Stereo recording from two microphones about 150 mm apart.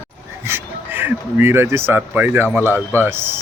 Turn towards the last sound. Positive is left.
turn(degrees=-15)  # may be behind; listen again after turning